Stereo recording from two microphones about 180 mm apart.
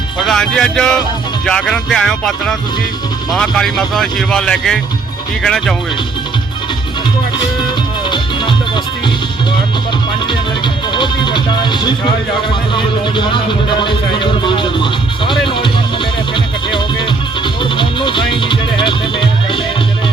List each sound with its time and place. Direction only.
0.2 s speech: 5° left (ahead or behind)
8.1 s music: 25° left (ahead or behind)
10.9 s speech: 25° left (ahead or behind)
14.4 s music: 25° left (ahead or behind)